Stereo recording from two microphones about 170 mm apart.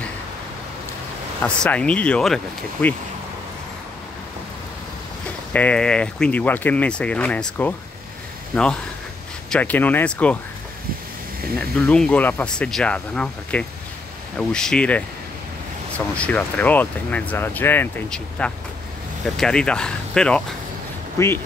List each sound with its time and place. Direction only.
1.4 s speech: 10° left (ahead or behind)
5.5 s speech: 10° left (ahead or behind)
9.5 s speech: 10° left (ahead or behind)
11.5 s speech: 5° left (ahead or behind)
16.2 s speech: 10° left (ahead or behind)
21.2 s speech: 15° left (ahead or behind)